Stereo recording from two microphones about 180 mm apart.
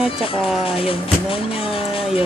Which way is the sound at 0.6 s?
30° left (ahead or behind).